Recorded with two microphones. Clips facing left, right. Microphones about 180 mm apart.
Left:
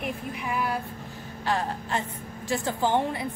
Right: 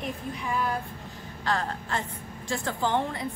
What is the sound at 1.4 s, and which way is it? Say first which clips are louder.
A woman's voice: left 1 dB; 15° left (ahead or behind).